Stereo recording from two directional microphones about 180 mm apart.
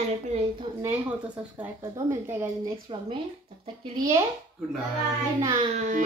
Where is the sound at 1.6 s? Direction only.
15° right (ahead or behind).